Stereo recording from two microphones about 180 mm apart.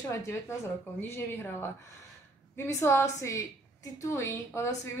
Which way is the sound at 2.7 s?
15° left (ahead or behind).